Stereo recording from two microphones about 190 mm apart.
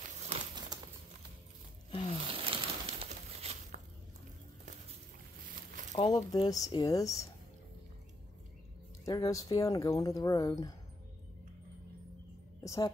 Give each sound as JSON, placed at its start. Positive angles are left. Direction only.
{"t": 0.3, "sound": "crumpling", "side_deg": -20}
{"t": 1.9, "sound": "a sound", "side_deg": 30}
{"t": 2.3, "sound": "a sound", "side_deg": -30}
{"t": 5.9, "sound": "speech", "side_deg": 20}
{"t": 9.0, "sound": "speech", "side_deg": 20}
{"t": 12.6, "sound": "a woman's voice", "side_deg": 15}